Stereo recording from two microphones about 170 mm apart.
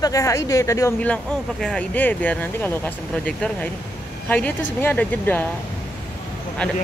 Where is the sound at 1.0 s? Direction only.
5° left (ahead or behind).